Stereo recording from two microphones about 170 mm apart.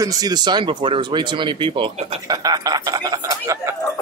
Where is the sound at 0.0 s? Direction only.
20° right (ahead or behind).